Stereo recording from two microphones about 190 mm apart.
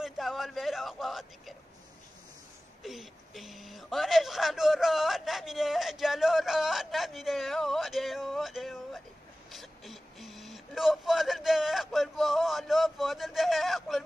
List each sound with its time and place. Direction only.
0.0 s speech: centre (ahead or behind)
2.8 s speech: centre (ahead or behind)